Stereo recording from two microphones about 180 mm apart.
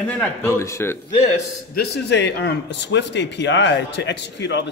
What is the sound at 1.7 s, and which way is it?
A man's voice, 60° left (ahead or behind).